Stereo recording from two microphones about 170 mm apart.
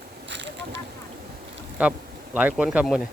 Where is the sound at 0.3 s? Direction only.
90° right.